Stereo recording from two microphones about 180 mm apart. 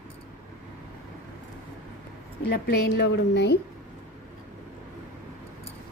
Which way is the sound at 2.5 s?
70° left (ahead or behind).